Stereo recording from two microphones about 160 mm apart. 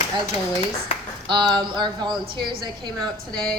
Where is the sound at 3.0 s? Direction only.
5° left (ahead or behind).